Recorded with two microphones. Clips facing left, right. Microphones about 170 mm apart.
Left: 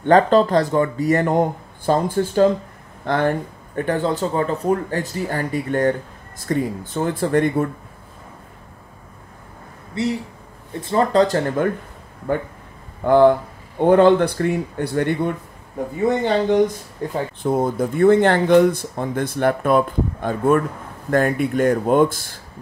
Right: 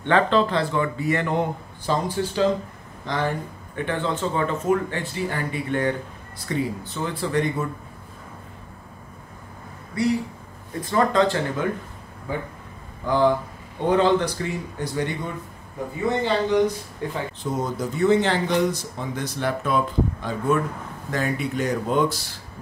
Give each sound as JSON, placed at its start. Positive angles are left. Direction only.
{"t": 0.0, "sound": "speech", "side_deg": 40}
{"t": 9.9, "sound": "speech", "side_deg": 25}
{"t": 12.3, "sound": "speech", "side_deg": 60}
{"t": 17.0, "sound": "speech", "side_deg": 40}
{"t": 17.4, "sound": "speech", "side_deg": 55}